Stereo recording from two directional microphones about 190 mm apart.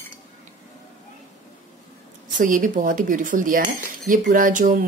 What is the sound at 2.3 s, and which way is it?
A woman's voice, 45° right (ahead or behind).